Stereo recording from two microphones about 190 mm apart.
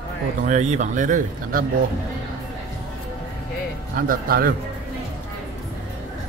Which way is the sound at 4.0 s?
50° right (ahead or behind).